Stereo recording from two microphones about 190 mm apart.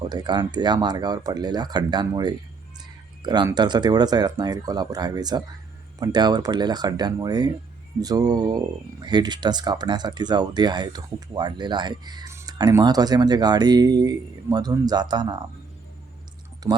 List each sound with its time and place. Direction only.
0.0 s speech: 25° right (ahead or behind)
16.6 s speech: 20° right (ahead or behind)